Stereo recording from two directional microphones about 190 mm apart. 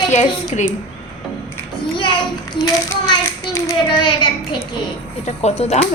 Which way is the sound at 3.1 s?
20° left (ahead or behind).